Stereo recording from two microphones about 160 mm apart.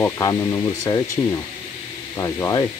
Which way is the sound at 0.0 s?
15° left (ahead or behind).